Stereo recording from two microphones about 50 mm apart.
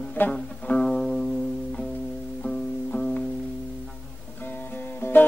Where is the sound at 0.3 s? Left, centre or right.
Left.